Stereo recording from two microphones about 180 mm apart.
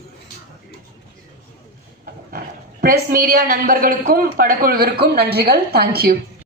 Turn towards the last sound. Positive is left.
turn(degrees=-55)  # may be behind; listen again after turning